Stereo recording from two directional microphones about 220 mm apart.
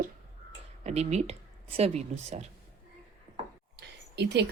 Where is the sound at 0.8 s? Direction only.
30° right (ahead or behind).